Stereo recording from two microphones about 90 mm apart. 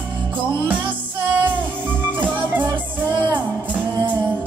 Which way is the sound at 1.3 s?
20° right (ahead or behind).